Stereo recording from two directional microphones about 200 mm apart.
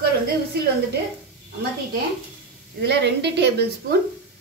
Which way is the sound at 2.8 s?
55° right (ahead or behind).